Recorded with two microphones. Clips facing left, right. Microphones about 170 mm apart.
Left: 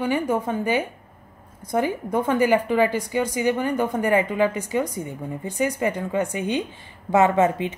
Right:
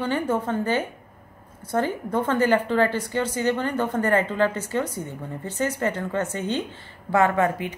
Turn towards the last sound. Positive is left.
turn(degrees=20)  # may be behind; listen again after turning